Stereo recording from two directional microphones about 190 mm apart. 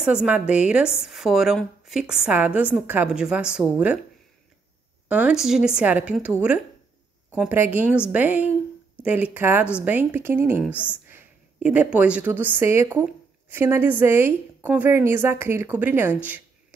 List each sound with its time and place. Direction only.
0.0 s a woman's voice: 5° right (ahead or behind)
5.0 s a woman's voice: 10° right (ahead or behind)
7.3 s speech: 10° right (ahead or behind)